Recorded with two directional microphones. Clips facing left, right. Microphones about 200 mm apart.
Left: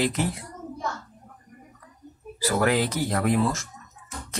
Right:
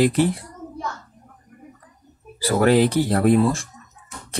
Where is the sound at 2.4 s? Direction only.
30° right (ahead or behind).